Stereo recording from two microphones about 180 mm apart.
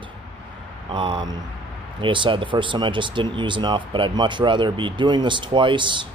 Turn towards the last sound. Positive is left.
turn(degrees=-25)  # may be behind; listen again after turning